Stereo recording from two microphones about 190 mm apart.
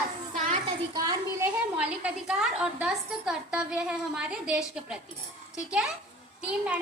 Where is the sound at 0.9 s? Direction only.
20° right (ahead or behind).